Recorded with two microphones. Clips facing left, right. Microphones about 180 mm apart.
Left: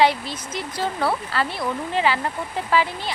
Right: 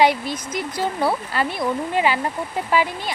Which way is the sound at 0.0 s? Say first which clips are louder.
Right 1 dB; 15° right (ahead or behind).